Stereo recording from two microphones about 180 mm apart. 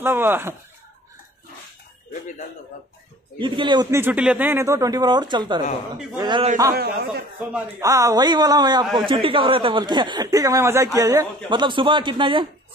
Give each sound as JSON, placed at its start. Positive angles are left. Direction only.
{"t": 0.0, "sound": "speech", "side_deg": -10}
{"t": 3.3, "sound": "a man's voice", "side_deg": -25}
{"t": 6.7, "sound": "a man's voice", "side_deg": -60}
{"t": 7.5, "sound": "a man's voice", "side_deg": -15}